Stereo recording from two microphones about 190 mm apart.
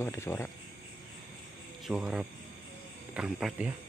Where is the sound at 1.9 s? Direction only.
5° right (ahead or behind).